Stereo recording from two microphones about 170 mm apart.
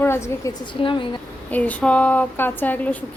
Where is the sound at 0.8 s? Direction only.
30° left (ahead or behind).